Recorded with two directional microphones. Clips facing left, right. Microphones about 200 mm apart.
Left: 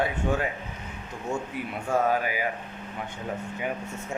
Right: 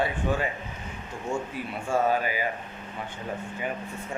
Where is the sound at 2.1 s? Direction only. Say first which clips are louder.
Even; 10° left (ahead or behind).